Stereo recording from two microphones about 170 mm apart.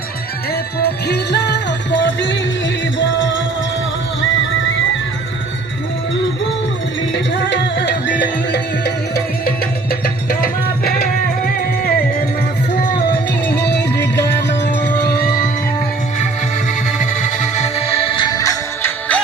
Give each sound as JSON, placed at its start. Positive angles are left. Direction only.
{"t": 0.8, "sound": "music", "side_deg": 75}
{"t": 7.1, "sound": "music", "side_deg": 90}
{"t": 8.2, "sound": "music", "side_deg": 75}
{"t": 13.1, "sound": "music", "side_deg": 80}
{"t": 17.0, "sound": "music", "side_deg": 45}
{"t": 18.2, "sound": "music", "side_deg": 20}